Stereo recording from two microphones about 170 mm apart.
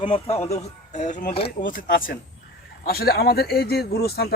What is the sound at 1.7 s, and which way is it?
A man's voice, 55° left (ahead or behind).